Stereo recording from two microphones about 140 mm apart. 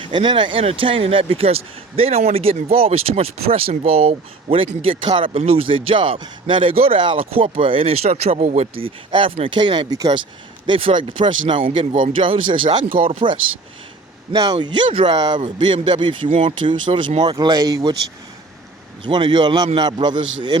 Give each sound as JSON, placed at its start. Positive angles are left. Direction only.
{"t": 0.0, "sound": "speech", "side_deg": -35}
{"t": 14.3, "sound": "speech", "side_deg": -30}
{"t": 19.0, "sound": "speech", "side_deg": -35}